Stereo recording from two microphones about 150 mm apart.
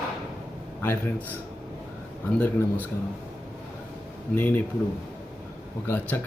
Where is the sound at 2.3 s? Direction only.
10° left (ahead or behind).